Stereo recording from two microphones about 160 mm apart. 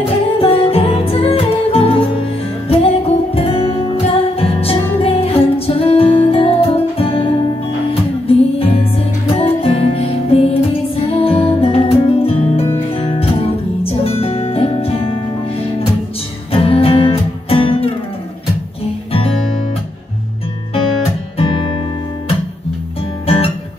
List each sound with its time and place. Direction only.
0.0 s music: 35° left (ahead or behind)
16.5 s music: 35° left (ahead or behind)
21.4 s music: 30° left (ahead or behind)
23.2 s music: 40° left (ahead or behind)